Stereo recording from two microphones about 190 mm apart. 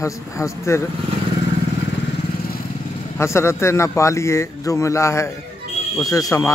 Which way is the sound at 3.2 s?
15° left (ahead or behind).